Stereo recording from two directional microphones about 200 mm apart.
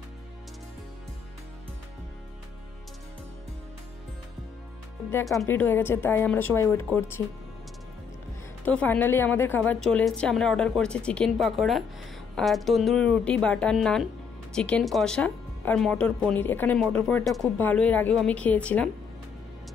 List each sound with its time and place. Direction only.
5.1 s a woman's voice: 15° left (ahead or behind)
8.6 s a woman's voice: 10° left (ahead or behind)